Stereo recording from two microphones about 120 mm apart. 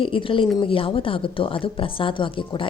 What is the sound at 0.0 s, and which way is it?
Speech, 45° left (ahead or behind).